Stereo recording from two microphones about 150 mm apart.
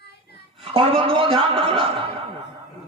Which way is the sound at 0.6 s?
40° right (ahead or behind).